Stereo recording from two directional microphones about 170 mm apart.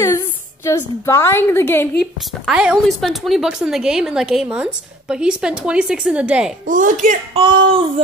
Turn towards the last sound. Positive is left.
turn(degrees=-30)  # may be behind; listen again after turning